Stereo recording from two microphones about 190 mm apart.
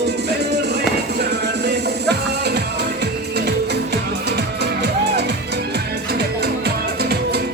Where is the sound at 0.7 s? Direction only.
60° right (ahead or behind).